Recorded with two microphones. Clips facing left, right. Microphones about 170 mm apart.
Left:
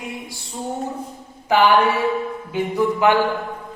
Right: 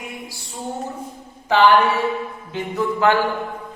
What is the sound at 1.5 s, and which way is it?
Music, 10° left (ahead or behind).